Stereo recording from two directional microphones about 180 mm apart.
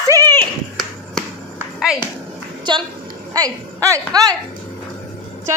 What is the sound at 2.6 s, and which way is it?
A woman's voice, 25° right (ahead or behind).